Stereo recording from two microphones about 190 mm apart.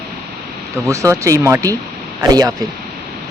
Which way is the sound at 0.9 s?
15° right (ahead or behind).